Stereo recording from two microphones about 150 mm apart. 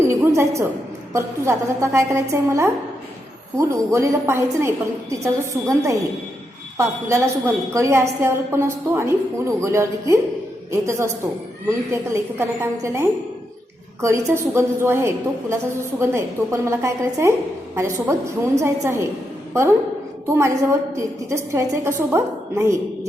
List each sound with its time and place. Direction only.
0.0 s a sound: 15° right (ahead or behind)
1.1 s a woman's voice: 20° right (ahead or behind)
20.2 s a woman's voice: 20° right (ahead or behind)